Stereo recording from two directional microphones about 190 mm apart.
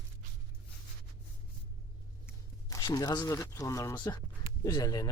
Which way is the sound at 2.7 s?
20° left (ahead or behind).